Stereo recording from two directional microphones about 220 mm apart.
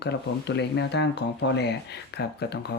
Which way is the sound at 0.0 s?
50° left (ahead or behind).